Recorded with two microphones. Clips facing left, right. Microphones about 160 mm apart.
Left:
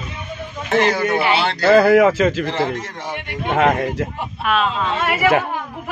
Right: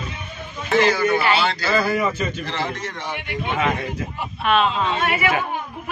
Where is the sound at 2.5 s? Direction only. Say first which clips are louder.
Left 5 dB; 40° left (ahead or behind).